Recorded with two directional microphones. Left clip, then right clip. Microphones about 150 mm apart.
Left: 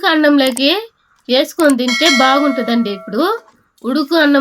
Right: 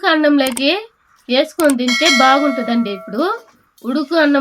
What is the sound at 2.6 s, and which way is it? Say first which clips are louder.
A woman's voice: left 2 dB; 35° left (ahead or behind).